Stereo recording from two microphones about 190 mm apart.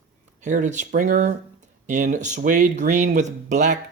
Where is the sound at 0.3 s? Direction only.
40° right (ahead or behind).